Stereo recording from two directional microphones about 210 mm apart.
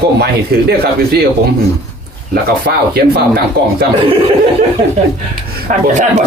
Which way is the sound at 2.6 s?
50° right (ahead or behind).